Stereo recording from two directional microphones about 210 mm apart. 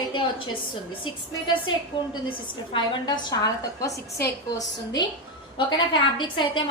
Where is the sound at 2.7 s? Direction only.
20° left (ahead or behind).